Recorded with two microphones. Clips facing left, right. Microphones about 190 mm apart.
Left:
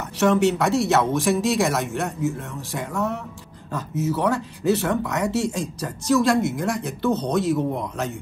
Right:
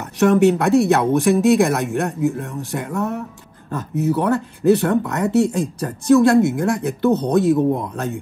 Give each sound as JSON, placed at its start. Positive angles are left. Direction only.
{"t": 0.2, "sound": "speech", "side_deg": -55}